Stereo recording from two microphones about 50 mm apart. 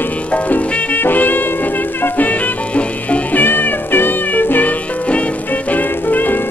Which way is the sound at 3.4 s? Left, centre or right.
Left.